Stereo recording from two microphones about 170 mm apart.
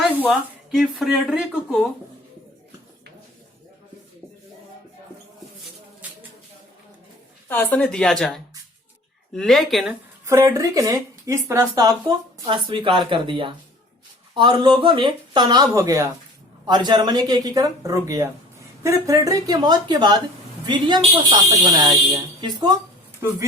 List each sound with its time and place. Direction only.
0.3 s speech: centre (ahead or behind)
7.4 s speech: 10° left (ahead or behind)
9.9 s speech: 15° right (ahead or behind)